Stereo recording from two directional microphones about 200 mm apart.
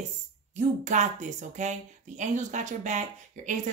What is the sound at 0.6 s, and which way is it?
Speech, 40° right (ahead or behind).